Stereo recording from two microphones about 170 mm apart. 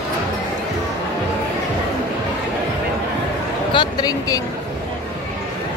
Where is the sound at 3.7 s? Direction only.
25° left (ahead or behind).